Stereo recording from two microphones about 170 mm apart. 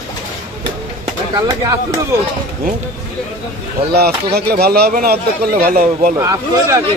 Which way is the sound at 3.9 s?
70° right (ahead or behind).